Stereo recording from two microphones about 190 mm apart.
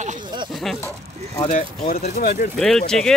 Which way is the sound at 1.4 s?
40° left (ahead or behind).